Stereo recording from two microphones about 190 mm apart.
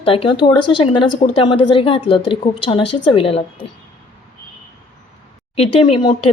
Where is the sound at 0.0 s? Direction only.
30° left (ahead or behind).